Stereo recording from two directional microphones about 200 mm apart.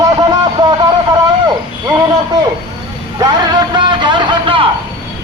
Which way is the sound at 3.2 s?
20° right (ahead or behind).